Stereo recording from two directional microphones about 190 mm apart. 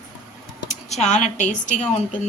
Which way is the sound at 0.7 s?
35° left (ahead or behind).